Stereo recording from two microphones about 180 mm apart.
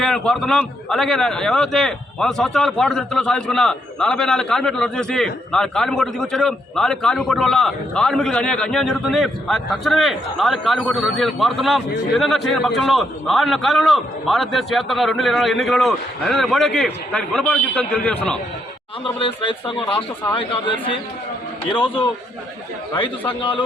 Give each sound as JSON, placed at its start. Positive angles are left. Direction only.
{"t": 0.0, "sound": "a man's voice", "side_deg": 0}
{"t": 19.2, "sound": "speech", "side_deg": 30}